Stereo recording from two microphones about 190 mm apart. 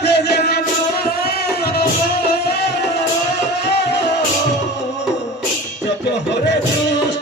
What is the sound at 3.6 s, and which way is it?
Music, 65° left (ahead or behind).